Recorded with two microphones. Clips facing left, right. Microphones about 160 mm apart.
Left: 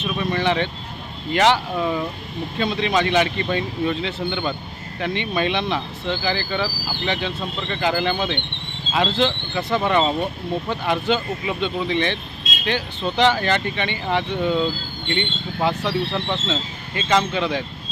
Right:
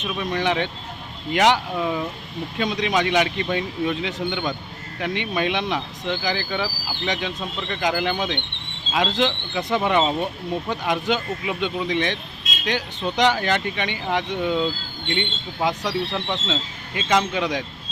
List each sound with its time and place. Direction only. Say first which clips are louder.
0.0 s speech: left 2 dB; 15° right (ahead or behind)